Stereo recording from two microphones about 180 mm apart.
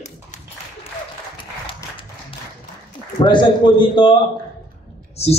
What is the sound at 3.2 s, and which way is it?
Speech, 25° left (ahead or behind).